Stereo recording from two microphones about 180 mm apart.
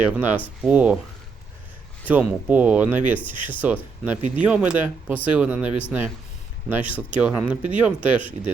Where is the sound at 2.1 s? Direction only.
10° right (ahead or behind).